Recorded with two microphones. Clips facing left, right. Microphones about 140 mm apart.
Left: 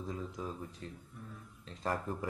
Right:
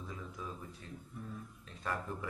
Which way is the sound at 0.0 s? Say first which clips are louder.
Left 5 dB; 35° left (ahead or behind).